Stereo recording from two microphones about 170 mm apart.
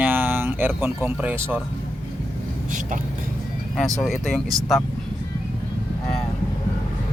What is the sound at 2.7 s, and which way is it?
Speech, 50° right (ahead or behind).